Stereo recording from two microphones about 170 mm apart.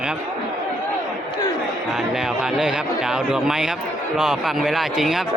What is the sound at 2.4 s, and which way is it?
Speech, 5° right (ahead or behind).